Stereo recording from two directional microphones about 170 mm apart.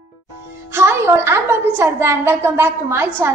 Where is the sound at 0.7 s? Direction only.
15° right (ahead or behind).